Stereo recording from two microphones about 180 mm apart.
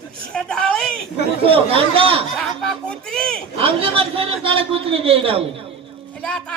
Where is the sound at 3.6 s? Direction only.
30° right (ahead or behind).